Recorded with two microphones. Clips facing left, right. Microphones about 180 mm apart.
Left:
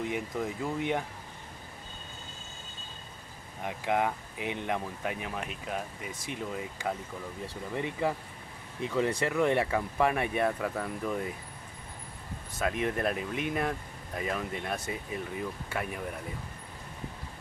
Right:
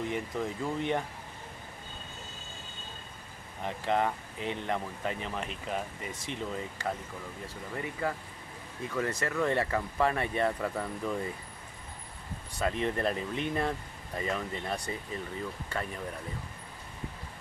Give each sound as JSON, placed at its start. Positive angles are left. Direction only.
{"t": 0.1, "sound": "speech", "side_deg": 10}
{"t": 3.6, "sound": "speech", "side_deg": 10}
{"t": 7.7, "sound": "speech", "side_deg": 20}
{"t": 12.5, "sound": "speech", "side_deg": 5}